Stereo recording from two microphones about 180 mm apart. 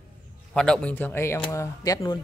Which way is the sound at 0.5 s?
5° left (ahead or behind).